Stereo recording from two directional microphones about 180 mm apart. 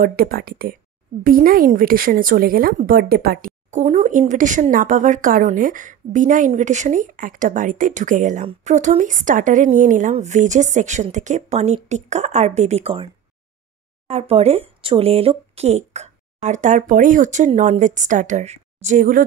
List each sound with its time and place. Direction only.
0.0 s a woman's voice: 55° right (ahead or behind)
3.8 s a woman's voice: 40° right (ahead or behind)